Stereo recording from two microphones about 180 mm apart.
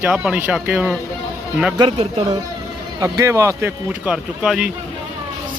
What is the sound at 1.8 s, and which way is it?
Speech, 30° right (ahead or behind).